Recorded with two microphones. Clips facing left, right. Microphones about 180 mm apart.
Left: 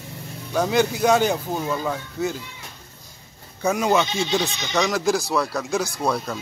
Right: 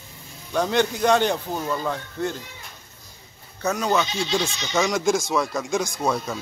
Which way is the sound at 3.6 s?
10° left (ahead or behind).